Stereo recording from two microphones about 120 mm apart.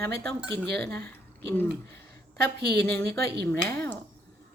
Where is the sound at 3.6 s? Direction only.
20° left (ahead or behind).